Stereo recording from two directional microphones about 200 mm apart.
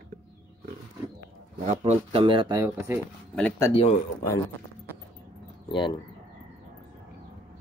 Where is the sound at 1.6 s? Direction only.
35° right (ahead or behind); by 3.0 s 15° right (ahead or behind).